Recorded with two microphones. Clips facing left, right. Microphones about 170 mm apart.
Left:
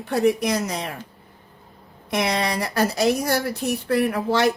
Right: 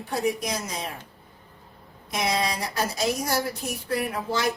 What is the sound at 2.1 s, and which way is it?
Speech, 65° left (ahead or behind).